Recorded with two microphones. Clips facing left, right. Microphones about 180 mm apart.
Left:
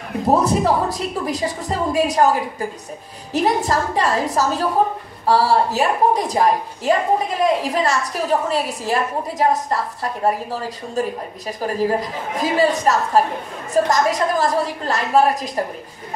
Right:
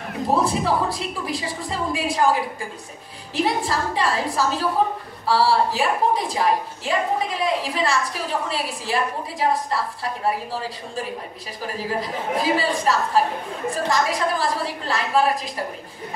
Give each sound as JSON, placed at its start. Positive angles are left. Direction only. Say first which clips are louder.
{"t": 0.3, "sound": "a woman's voice", "louder": "left 4 dB", "side_deg": 40}
{"t": 3.3, "sound": "a woman's voice", "louder": "left 4 dB", "side_deg": 45}